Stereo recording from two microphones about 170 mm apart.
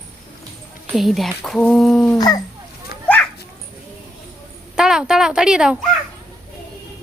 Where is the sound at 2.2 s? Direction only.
20° left (ahead or behind).